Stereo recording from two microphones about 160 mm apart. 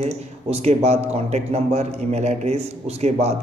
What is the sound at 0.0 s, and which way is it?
A man's voice, 40° right (ahead or behind).